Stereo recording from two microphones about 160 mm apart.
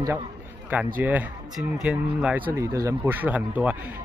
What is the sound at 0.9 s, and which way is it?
Speech, 10° right (ahead or behind).